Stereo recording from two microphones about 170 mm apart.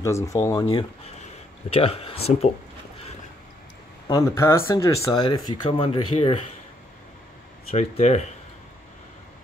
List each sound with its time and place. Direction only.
0.0 s speech: 20° left (ahead or behind)
1.7 s speech: 35° left (ahead or behind)
4.1 s speech: 15° left (ahead or behind); by 6.3 s 35° left (ahead or behind)
7.7 s speech: 40° left (ahead or behind)